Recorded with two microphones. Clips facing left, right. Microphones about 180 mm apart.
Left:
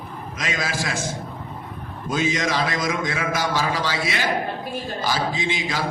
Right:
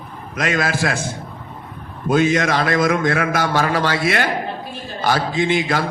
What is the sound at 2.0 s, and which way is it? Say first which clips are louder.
A man's voice: right 7 dB; 60° right (ahead or behind).